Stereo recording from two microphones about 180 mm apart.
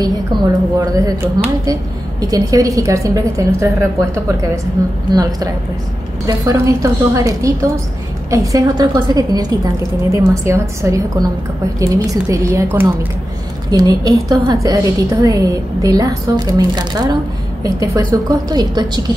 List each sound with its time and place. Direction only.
0.0 s a woman's voice: 20° right (ahead or behind)
4.8 s a woman's voice: 20° right (ahead or behind)